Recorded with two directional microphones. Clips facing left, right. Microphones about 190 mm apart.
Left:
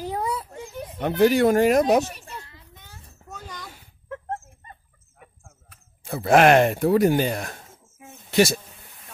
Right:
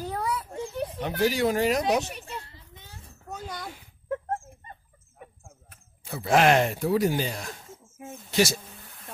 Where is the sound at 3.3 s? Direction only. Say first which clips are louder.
Right 3 dB; 45° right (ahead or behind).